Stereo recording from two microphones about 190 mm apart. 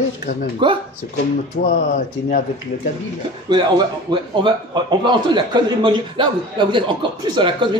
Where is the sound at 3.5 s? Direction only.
25° right (ahead or behind).